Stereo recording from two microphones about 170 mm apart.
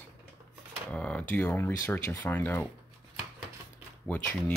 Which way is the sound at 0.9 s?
5° left (ahead or behind).